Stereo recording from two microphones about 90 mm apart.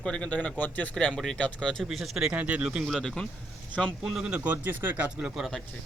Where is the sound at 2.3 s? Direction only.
15° right (ahead or behind).